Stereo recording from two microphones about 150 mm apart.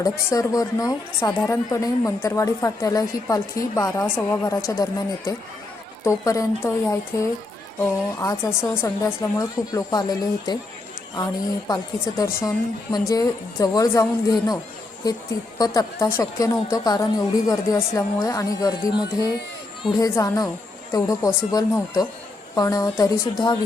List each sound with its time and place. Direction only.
0.0 s speech: 20° left (ahead or behind)
11.7 s speech: 20° left (ahead or behind)
20.0 s speech: 20° left (ahead or behind)